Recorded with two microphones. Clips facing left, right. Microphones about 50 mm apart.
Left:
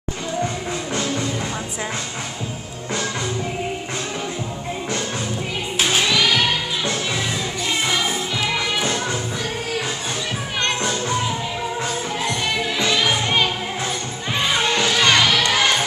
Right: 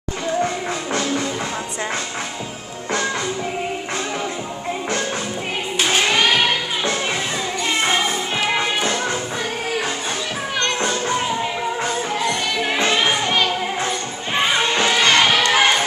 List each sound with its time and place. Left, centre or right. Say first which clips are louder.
6.0 s music: right 2 dB; right
8.5 s music: right 2 dB; right
10.9 s music: right 1 dB; centre
12.7 s music: right 3 dB; right
14.5 s music: even; centre